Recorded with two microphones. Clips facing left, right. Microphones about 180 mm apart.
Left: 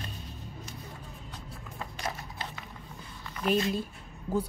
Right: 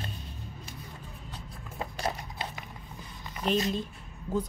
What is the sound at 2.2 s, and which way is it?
Horse, 15° right (ahead or behind).